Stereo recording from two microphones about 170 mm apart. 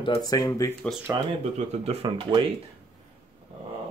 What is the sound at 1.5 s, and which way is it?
Speech, 35° right (ahead or behind).